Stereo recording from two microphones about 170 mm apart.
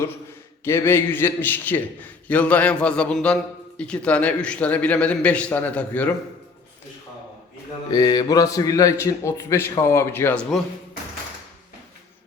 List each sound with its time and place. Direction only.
0.6 s a man's voice: 15° left (ahead or behind)
7.9 s a man's voice: 25° left (ahead or behind)